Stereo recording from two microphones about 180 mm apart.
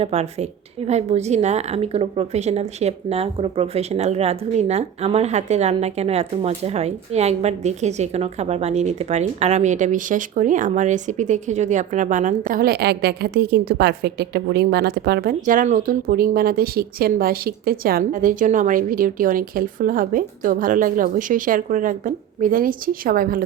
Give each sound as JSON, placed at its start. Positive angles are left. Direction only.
{"t": 0.0, "sound": "a woman's voice", "side_deg": -35}